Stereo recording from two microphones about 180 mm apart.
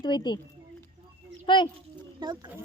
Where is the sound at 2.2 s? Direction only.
25° right (ahead or behind).